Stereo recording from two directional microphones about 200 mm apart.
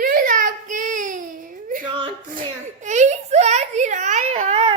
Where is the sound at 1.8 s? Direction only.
25° right (ahead or behind).